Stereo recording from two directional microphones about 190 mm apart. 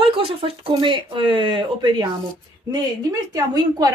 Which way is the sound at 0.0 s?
30° right (ahead or behind).